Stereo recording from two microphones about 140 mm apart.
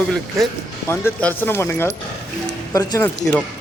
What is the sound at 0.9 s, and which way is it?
Speech, 15° left (ahead or behind).